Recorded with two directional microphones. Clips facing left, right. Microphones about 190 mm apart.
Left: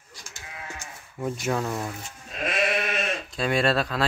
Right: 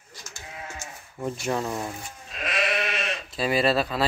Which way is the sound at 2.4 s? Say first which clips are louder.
Left 2 dB; 45° left (ahead or behind).